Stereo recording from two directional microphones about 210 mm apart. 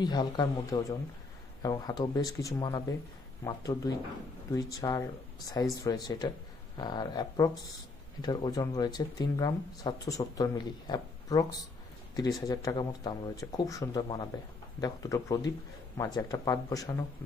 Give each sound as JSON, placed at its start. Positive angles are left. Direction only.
{"t": 0.0, "sound": "speech", "side_deg": 20}